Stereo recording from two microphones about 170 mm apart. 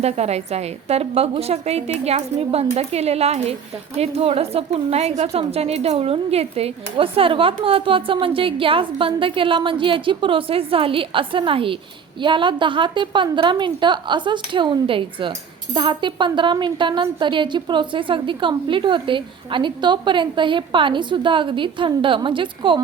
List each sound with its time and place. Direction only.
0.0 s a woman's voice: 40° right (ahead or behind)